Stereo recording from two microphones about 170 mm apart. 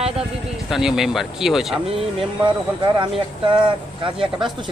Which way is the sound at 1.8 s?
35° right (ahead or behind).